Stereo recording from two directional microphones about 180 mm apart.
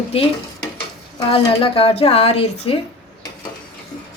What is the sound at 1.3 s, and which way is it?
A woman's voice, 30° left (ahead or behind).